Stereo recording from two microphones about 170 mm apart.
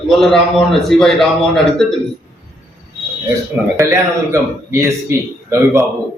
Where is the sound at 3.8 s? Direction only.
15° right (ahead or behind).